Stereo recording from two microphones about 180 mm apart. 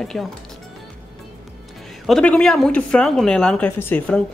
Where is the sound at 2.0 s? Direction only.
5° left (ahead or behind).